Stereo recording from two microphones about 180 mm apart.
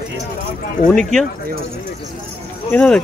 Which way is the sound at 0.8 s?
5° left (ahead or behind).